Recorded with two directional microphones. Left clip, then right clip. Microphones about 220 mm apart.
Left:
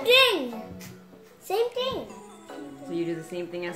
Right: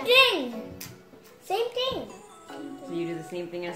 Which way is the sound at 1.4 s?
15° left (ahead or behind).